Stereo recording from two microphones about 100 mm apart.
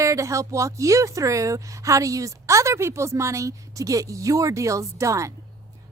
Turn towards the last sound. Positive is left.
turn(degrees=-30)  # may be behind; listen again after turning